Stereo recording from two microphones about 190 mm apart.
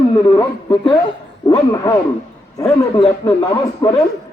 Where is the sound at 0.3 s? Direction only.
20° left (ahead or behind).